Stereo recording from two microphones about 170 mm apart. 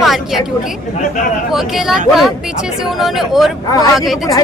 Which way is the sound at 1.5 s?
Centre (ahead or behind).